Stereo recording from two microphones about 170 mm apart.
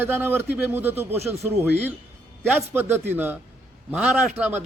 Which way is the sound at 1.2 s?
40° right (ahead or behind).